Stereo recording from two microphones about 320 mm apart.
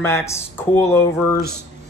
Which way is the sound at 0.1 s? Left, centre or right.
Centre.